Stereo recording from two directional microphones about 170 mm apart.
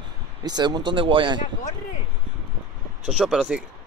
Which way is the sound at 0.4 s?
25° right (ahead or behind).